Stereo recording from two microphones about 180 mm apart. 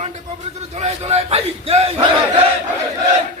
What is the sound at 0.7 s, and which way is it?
A man's voice, 35° right (ahead or behind).